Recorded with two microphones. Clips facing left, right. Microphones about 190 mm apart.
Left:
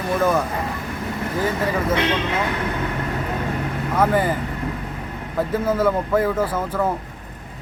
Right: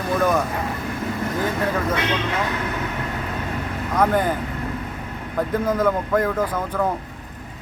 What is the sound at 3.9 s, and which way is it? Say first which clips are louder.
Speech: even; 5° left (ahead or behind).